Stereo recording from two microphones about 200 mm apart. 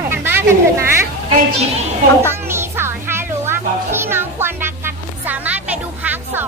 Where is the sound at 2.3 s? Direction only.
10° right (ahead or behind).